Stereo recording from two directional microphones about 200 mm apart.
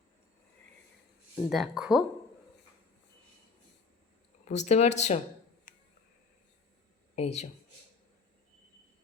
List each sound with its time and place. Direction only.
1.5 s speech: centre (ahead or behind)
4.4 s speech: 35° left (ahead or behind)
7.2 s speech: 35° left (ahead or behind)